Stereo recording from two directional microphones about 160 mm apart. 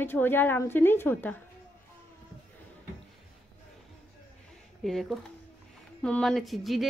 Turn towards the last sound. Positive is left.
turn(degrees=0)  # may be behind; listen again after turning